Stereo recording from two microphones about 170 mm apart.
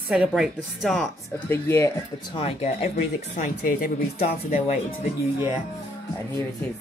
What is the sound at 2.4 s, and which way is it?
Speech, 35° left (ahead or behind).